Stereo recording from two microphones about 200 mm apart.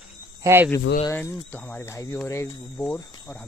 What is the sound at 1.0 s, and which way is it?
Speech, 15° left (ahead or behind).